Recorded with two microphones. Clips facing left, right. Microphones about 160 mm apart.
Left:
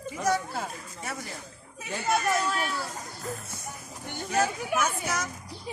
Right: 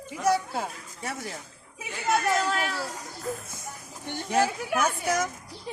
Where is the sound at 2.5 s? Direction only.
85° right.